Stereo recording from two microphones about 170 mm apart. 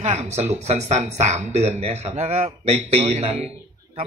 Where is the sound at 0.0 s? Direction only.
40° right (ahead or behind).